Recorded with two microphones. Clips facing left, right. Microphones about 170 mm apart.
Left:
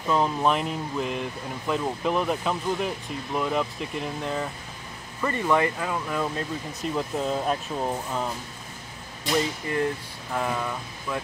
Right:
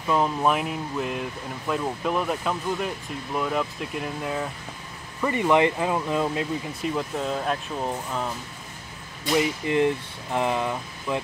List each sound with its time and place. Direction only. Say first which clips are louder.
0.1 s speech: right 1 dB; 5° right (ahead or behind)
5.2 s speech: right 3 dB; 15° right (ahead or behind)
7.0 s speech: left 3 dB; centre (ahead or behind)
9.4 s speech: right 6 dB; 20° right (ahead or behind)